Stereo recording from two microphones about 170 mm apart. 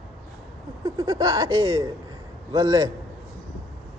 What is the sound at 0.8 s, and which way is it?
Speech, 20° right (ahead or behind).